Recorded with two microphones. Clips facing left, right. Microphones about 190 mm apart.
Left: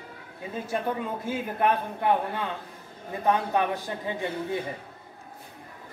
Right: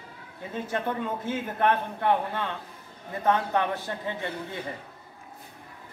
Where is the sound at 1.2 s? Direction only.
10° left (ahead or behind).